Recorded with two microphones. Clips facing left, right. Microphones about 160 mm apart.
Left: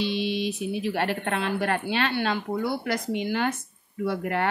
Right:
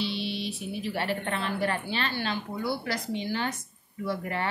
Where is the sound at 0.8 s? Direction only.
70° left (ahead or behind).